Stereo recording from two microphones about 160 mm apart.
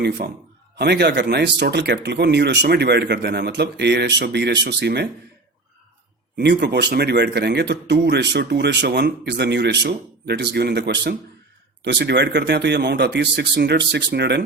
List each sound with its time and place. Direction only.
0.0 s speech: 90° right
6.3 s speech: 90° right